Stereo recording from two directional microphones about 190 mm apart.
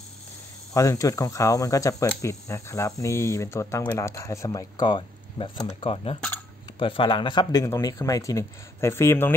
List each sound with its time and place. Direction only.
0.7 s speech: 15° left (ahead or behind)